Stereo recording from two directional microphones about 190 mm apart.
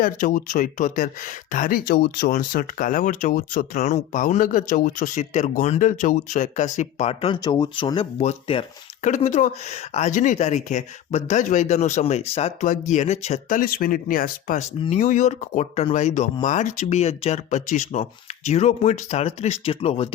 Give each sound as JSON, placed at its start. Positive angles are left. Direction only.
{"t": 0.0, "sound": "speech", "side_deg": 45}
{"t": 14.8, "sound": "speech", "side_deg": 35}